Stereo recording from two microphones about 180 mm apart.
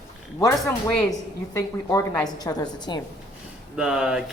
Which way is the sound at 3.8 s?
5° right (ahead or behind).